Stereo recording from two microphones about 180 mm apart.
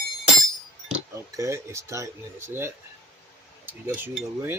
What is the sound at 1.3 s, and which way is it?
Speech, 15° right (ahead or behind).